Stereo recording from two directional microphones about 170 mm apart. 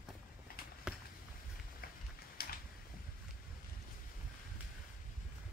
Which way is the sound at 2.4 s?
60° left (ahead or behind).